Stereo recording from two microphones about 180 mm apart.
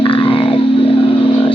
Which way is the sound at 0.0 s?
25° left (ahead or behind).